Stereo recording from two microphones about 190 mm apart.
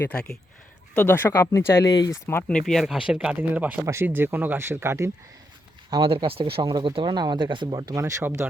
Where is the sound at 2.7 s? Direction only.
Centre (ahead or behind).